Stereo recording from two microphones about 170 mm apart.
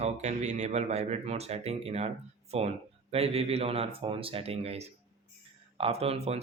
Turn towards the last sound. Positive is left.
turn(degrees=-35)  # may be behind; listen again after turning